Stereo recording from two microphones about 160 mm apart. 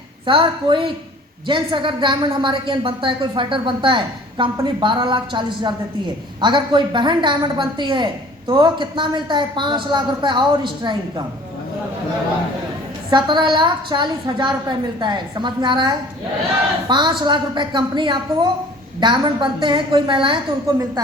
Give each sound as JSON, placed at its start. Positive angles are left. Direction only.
{"t": 0.3, "sound": "a woman's voice", "side_deg": -30}
{"t": 13.1, "sound": "a woman's voice", "side_deg": -30}